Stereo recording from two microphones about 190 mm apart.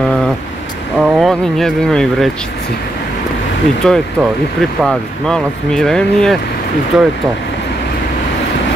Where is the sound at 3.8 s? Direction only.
5° left (ahead or behind).